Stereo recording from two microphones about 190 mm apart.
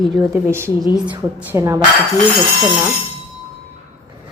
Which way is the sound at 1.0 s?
10° right (ahead or behind).